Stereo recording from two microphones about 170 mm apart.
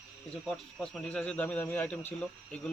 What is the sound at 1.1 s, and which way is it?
A man's voice, 5° left (ahead or behind).